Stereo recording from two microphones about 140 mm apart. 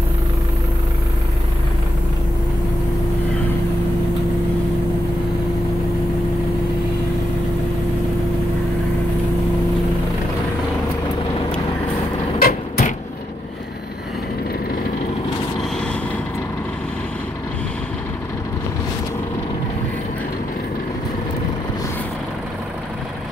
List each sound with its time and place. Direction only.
12.4 s vehicle: 90° left